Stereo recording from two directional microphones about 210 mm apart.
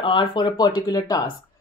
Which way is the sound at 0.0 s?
25° left (ahead or behind).